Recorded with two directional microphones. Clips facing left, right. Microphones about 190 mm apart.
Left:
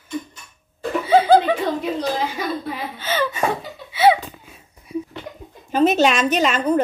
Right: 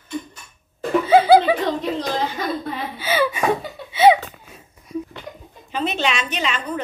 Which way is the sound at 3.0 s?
10° right (ahead or behind).